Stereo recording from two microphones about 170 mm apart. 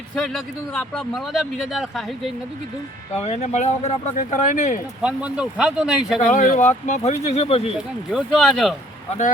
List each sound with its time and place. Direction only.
0.2 s speech: 5° left (ahead or behind)
3.2 s speech: 40° left (ahead or behind)
5.0 s speech: 5° right (ahead or behind)
6.2 s speech: 45° left (ahead or behind)
8.1 s speech: centre (ahead or behind)